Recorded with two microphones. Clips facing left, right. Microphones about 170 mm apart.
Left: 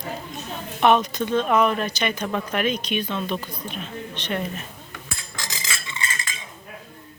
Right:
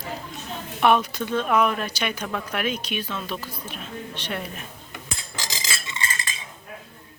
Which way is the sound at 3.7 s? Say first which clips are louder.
Left 3 dB; 5° right (ahead or behind).